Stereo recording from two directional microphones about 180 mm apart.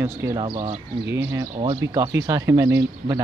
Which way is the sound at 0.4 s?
25° right (ahead or behind).